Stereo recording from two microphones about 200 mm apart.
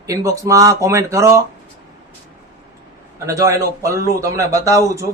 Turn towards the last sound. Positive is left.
turn(degrees=-15)  # may be behind; listen again after turning